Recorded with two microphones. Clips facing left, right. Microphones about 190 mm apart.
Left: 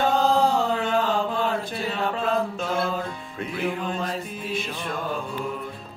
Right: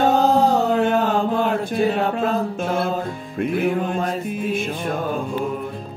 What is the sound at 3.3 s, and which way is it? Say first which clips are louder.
Music: right 8 dB; 50° right (ahead or behind).